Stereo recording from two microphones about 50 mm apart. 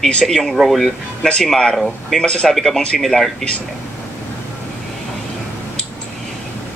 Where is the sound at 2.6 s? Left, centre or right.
Centre.